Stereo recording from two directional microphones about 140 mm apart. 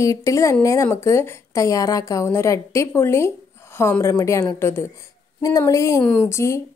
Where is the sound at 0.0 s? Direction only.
25° left (ahead or behind).